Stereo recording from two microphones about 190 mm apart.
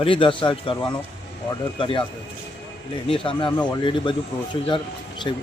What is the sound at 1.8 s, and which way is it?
Speech, 25° left (ahead or behind).